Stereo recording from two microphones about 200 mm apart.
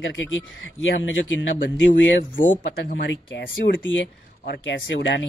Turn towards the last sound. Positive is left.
turn(degrees=65)  # may be behind; listen again after turning